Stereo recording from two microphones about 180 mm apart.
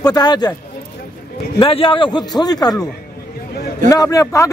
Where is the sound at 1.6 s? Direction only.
30° left (ahead or behind).